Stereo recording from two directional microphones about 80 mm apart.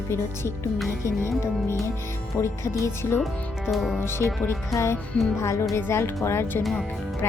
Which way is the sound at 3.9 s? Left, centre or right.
Left.